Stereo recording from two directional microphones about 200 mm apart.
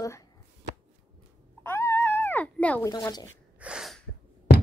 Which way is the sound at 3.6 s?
5° right (ahead or behind).